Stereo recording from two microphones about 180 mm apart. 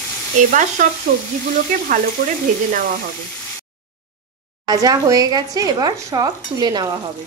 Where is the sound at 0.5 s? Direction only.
45° right (ahead or behind).